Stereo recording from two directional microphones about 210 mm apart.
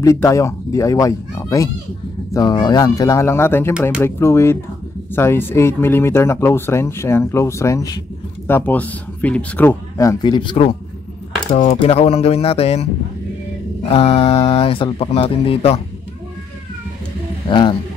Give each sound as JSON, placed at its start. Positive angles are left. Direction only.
{"t": 0.0, "sound": "speech", "side_deg": 15}
{"t": 13.8, "sound": "speech", "side_deg": 30}
{"t": 17.5, "sound": "speech", "side_deg": 20}